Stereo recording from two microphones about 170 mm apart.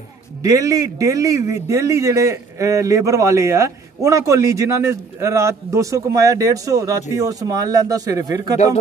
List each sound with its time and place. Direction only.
0.4 s a man's voice: 20° right (ahead or behind)